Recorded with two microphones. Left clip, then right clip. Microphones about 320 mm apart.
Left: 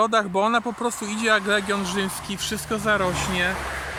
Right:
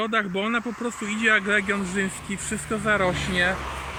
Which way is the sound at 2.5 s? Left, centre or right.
Centre.